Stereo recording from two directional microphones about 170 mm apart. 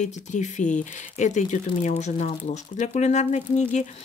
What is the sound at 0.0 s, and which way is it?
Speech, 45° left (ahead or behind).